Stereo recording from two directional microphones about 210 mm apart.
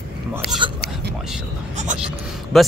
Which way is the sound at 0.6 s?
25° right (ahead or behind).